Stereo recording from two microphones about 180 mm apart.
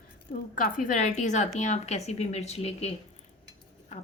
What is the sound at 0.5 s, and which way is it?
A woman's voice, 50° left (ahead or behind).